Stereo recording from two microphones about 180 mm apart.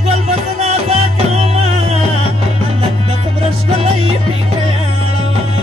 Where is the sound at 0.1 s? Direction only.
30° right (ahead or behind).